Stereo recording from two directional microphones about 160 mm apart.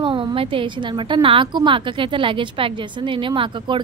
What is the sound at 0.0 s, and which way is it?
A woman's voice, 30° right (ahead or behind).